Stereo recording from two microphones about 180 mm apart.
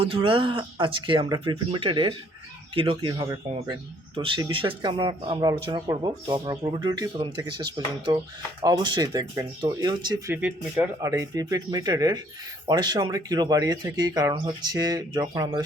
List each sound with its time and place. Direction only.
0.0 s speech: 30° right (ahead or behind)
10.3 s speech: 10° right (ahead or behind)